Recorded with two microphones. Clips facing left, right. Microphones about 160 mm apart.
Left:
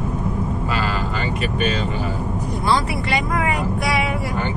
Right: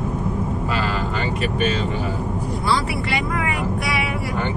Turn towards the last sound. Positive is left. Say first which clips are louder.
# left 2 dB
turn(degrees=40)  # may be behind; listen again after turning